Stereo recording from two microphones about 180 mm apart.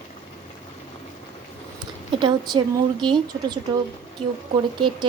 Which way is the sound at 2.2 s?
25° right (ahead or behind).